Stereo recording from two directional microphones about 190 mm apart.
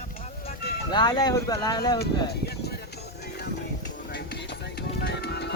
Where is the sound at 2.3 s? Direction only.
60° left (ahead or behind).